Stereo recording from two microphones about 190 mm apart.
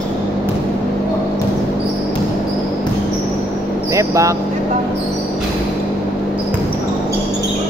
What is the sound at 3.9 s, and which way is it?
Speech, 15° right (ahead or behind).